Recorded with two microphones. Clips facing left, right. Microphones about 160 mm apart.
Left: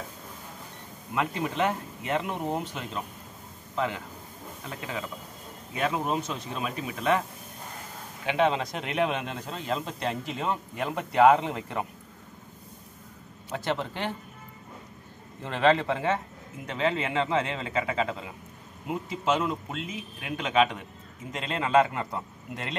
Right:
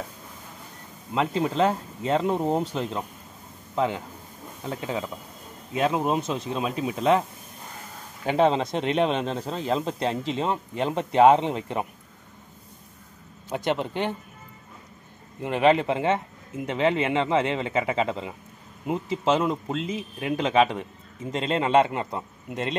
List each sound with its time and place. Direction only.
1.1 s a man's voice: 25° right (ahead or behind)
8.3 s speech: 35° right (ahead or behind)
13.5 s speech: 15° right (ahead or behind)
15.4 s speech: 15° right (ahead or behind)